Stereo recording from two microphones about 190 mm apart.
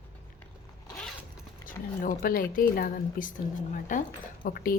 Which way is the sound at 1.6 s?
45° left (ahead or behind).